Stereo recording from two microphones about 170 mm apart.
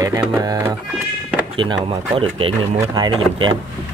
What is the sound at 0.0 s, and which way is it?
Speech, 20° right (ahead or behind).